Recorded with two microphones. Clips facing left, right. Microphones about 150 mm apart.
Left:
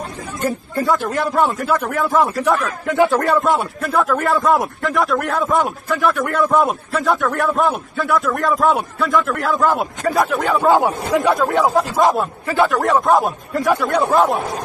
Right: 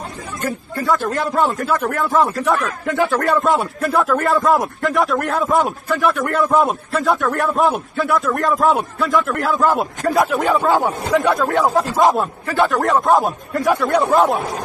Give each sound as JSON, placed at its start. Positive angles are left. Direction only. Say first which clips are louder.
{"t": 0.5, "sound": "speech", "louder": "left 1 dB", "side_deg": 20}
{"t": 1.1, "sound": "a man's voice", "louder": "left 1 dB", "side_deg": 0}
{"t": 3.0, "sound": "speech", "louder": "left 3 dB", "side_deg": 20}
{"t": 3.3, "sound": "a man's voice", "louder": "even", "side_deg": 0}
{"t": 12.4, "sound": "a man's voice", "louder": "left 1 dB", "side_deg": 15}
{"t": 12.7, "sound": "a man's voice", "louder": "right 1 dB", "side_deg": 0}